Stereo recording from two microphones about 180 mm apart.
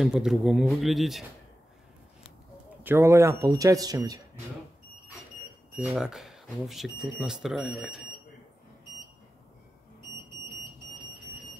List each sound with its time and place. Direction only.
0.0 s speech: centre (ahead or behind)
2.8 s speech: 15° right (ahead or behind)
5.7 s speech: 5° right (ahead or behind)